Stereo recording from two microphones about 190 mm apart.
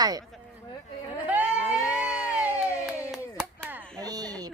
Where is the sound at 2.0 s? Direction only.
5° right (ahead or behind).